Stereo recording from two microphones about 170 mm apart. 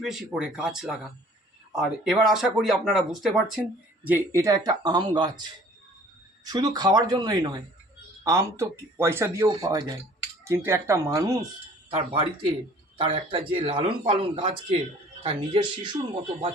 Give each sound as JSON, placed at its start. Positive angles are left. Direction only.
{"t": 0.0, "sound": "speech", "side_deg": -5}
{"t": 4.0, "sound": "speech", "side_deg": -15}
{"t": 11.9, "sound": "speech", "side_deg": -35}